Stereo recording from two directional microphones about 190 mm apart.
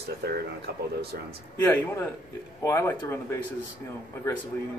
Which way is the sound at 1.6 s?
10° left (ahead or behind).